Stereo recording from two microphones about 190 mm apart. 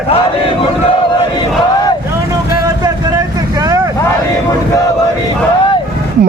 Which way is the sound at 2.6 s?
20° right (ahead or behind).